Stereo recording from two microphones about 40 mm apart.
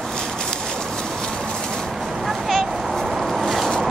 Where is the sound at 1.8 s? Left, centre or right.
Centre.